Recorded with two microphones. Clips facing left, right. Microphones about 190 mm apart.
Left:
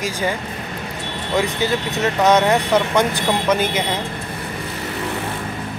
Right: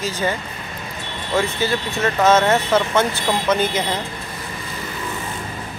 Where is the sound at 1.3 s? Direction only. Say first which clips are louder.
Left 1 dB; 15° left (ahead or behind).